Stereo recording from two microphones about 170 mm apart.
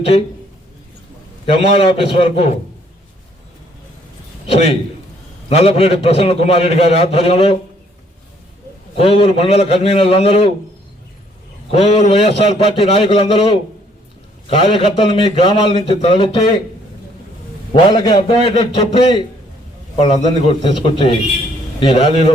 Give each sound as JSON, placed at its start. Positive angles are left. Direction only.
{"t": 1.6, "sound": "a man's voice", "side_deg": 35}
{"t": 4.4, "sound": "a man's voice", "side_deg": 35}
{"t": 9.0, "sound": "a man's voice", "side_deg": 35}
{"t": 11.7, "sound": "a man's voice", "side_deg": 35}
{"t": 17.8, "sound": "a man's voice", "side_deg": 25}